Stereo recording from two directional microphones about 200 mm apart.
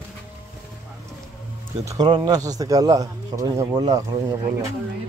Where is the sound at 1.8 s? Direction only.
20° right (ahead or behind).